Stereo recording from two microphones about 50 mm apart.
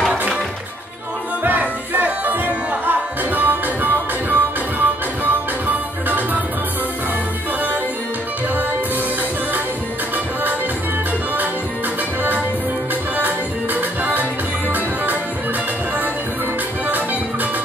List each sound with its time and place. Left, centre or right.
1.4 s music: right
13.7 s music: right